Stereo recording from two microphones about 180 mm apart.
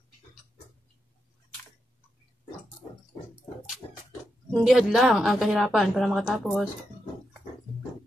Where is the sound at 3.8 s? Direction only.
30° left (ahead or behind).